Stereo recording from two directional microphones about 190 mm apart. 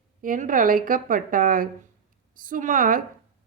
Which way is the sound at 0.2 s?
45° right (ahead or behind).